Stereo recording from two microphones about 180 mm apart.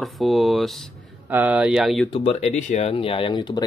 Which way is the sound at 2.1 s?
35° left (ahead or behind).